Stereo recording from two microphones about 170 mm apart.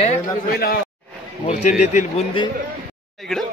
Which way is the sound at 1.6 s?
45° left (ahead or behind).